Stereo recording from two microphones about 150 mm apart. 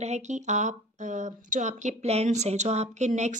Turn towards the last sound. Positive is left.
turn(degrees=-50)  # may be behind; listen again after turning